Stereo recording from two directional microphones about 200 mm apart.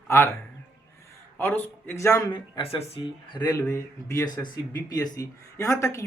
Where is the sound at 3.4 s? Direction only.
15° left (ahead or behind).